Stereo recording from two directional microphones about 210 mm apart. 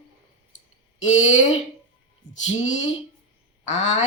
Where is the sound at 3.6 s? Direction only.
35° left (ahead or behind).